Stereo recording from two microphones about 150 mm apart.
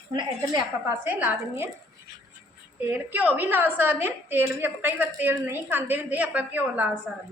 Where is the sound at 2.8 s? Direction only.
10° right (ahead or behind).